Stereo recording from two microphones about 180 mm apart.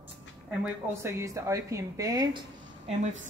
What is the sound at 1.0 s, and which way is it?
Speech, 15° right (ahead or behind).